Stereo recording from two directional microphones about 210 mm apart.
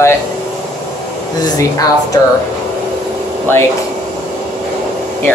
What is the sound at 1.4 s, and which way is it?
Speech, 15° left (ahead or behind).